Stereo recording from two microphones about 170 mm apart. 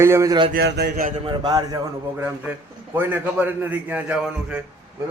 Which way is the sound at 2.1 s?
10° right (ahead or behind).